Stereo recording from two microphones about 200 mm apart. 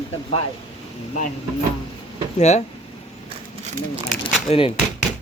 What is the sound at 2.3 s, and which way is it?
Speech, 35° left (ahead or behind).